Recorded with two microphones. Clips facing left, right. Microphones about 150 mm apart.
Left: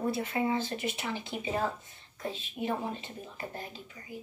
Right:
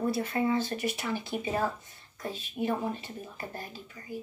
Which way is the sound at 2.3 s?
25° left (ahead or behind).